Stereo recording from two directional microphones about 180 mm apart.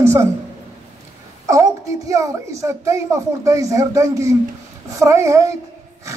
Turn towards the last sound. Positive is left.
turn(degrees=-15)  # may be behind; listen again after turning